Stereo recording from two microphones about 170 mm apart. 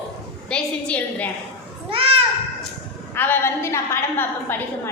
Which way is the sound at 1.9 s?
30° right (ahead or behind).